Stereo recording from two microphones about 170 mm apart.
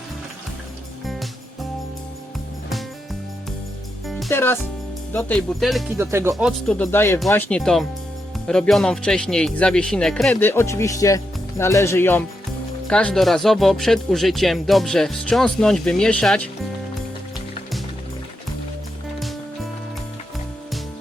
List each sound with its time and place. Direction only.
1.0 s music: centre (ahead or behind)
4.3 s speech: 15° left (ahead or behind)
5.1 s speech: 5° left (ahead or behind)
6.0 s speech: 15° right (ahead or behind)
6.3 s speech: centre (ahead or behind)
6.9 s speech: 15° left (ahead or behind)
10.4 s speech: 15° left (ahead or behind)